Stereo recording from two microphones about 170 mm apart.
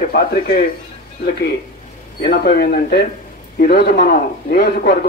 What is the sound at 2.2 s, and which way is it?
A man's voice, 60° left (ahead or behind).